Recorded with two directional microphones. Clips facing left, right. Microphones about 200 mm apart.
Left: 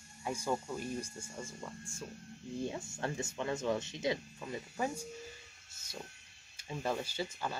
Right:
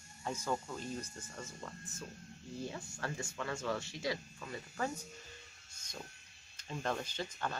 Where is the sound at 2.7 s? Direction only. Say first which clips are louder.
Left 4 dB; 25° left (ahead or behind).